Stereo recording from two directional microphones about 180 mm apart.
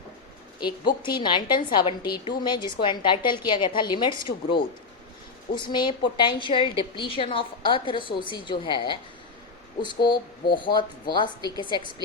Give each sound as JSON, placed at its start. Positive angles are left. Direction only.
{"t": 0.6, "sound": "a woman's voice", "side_deg": 25}